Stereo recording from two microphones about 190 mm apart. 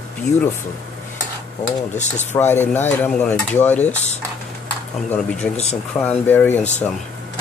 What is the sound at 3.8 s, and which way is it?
Speech, 35° left (ahead or behind).